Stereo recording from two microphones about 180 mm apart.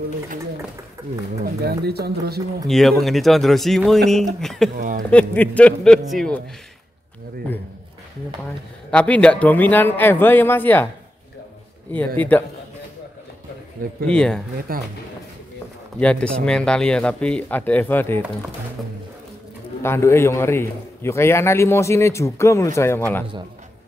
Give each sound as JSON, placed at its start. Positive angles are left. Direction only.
{"t": 1.4, "sound": "speech", "side_deg": -60}
{"t": 2.6, "sound": "speech", "side_deg": 0}
{"t": 4.7, "sound": "a sound", "side_deg": -50}
{"t": 5.1, "sound": "a man's voice", "side_deg": 10}
{"t": 8.9, "sound": "a man's voice", "side_deg": 5}
{"t": 12.2, "sound": "a man's voice", "side_deg": 10}
{"t": 14.0, "sound": "speech", "side_deg": 5}
{"t": 14.7, "sound": "speech", "side_deg": -55}
{"t": 16.0, "sound": "a man's voice", "side_deg": 5}
{"t": 19.8, "sound": "a man's voice", "side_deg": 15}